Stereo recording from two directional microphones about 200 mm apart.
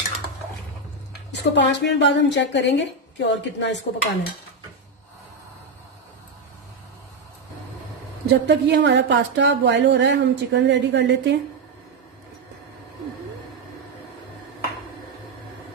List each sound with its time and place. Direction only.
1.3 s a woman's voice: 60° left (ahead or behind)
8.3 s speech: 60° right (ahead or behind)